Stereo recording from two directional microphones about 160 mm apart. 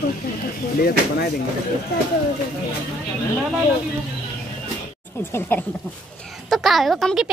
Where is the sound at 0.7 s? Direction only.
70° left (ahead or behind).